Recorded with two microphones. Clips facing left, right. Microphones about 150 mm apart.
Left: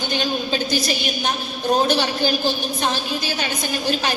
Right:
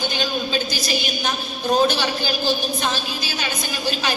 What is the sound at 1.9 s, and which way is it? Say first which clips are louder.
Speech: left 3 dB; 60° left (ahead or behind).